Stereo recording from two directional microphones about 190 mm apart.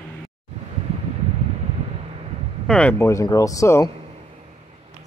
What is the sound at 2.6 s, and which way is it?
Speech, 5° left (ahead or behind).